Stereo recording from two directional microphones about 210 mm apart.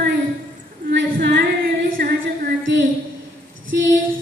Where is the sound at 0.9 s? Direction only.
50° right (ahead or behind).